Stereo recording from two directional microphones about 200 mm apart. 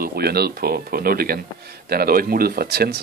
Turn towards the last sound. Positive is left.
turn(degrees=-55)  # may be behind; listen again after turning